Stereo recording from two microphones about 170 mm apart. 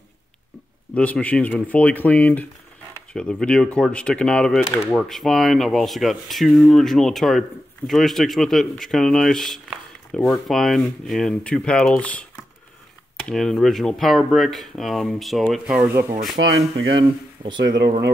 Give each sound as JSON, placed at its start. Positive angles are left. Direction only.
{"t": 0.9, "sound": "speech", "side_deg": 5}
{"t": 16.3, "sound": "speech", "side_deg": -90}